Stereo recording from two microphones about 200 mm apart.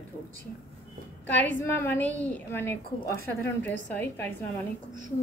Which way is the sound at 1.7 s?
10° left (ahead or behind).